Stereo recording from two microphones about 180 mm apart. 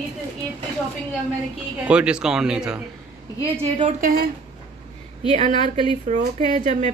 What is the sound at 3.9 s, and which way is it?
Speech, 50° right (ahead or behind).